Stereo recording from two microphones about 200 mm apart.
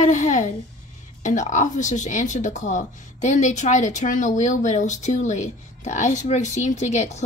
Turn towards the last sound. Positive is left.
turn(degrees=35)  # may be behind; listen again after turning